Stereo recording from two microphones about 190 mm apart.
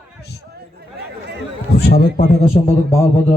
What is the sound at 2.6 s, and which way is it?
Speech, 40° left (ahead or behind).